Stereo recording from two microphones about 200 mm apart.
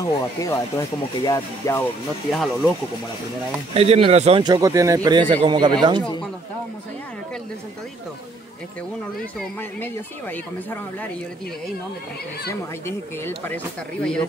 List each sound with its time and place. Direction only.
0.0 s speech: 15° left (ahead or behind)
2.3 s speech: centre (ahead or behind)
3.7 s speech: 30° right (ahead or behind)
9.4 s speech: 10° left (ahead or behind)
12.8 s speech: 10° left (ahead or behind)